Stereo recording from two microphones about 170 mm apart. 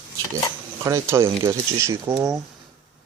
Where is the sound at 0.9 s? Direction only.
15° right (ahead or behind).